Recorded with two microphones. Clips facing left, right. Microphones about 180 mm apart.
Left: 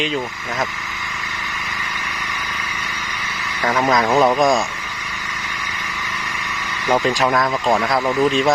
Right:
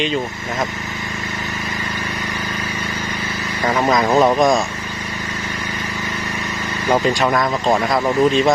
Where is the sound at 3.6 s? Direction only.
Centre (ahead or behind).